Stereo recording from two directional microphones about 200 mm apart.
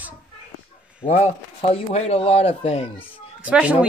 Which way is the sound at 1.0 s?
30° left (ahead or behind).